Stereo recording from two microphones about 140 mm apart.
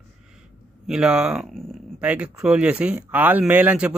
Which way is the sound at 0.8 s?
5° right (ahead or behind).